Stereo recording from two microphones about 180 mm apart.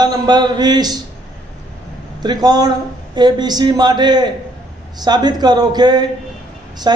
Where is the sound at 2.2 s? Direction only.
25° right (ahead or behind).